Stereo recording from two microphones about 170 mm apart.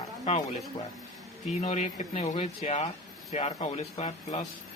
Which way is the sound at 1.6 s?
40° left (ahead or behind).